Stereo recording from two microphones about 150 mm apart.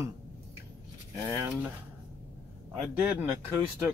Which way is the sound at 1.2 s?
15° right (ahead or behind).